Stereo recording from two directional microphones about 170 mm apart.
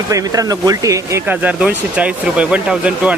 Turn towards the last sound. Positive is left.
turn(degrees=-5)  # may be behind; listen again after turning